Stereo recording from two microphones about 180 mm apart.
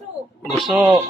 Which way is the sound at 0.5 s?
Centre (ahead or behind).